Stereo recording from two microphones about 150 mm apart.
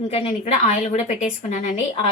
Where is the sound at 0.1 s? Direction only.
45° left (ahead or behind).